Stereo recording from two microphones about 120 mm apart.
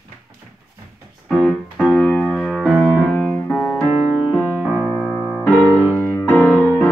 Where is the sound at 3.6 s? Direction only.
15° left (ahead or behind).